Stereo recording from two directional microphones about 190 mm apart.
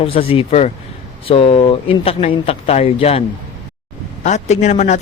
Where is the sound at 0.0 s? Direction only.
30° left (ahead or behind).